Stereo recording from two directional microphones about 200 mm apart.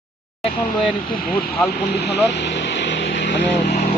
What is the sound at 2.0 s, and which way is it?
Speech, 55° left (ahead or behind).